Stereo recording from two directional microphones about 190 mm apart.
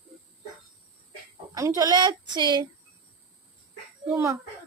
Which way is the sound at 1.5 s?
15° right (ahead or behind).